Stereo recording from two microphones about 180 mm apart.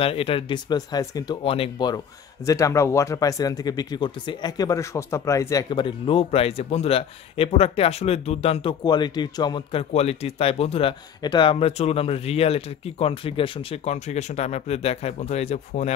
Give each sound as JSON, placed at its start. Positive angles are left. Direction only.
{"t": 0.0, "sound": "speech", "side_deg": 30}
{"t": 8.8, "sound": "speech", "side_deg": 25}